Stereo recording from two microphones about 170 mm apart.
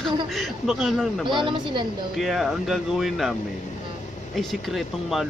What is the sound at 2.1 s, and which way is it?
A man's voice, centre (ahead or behind).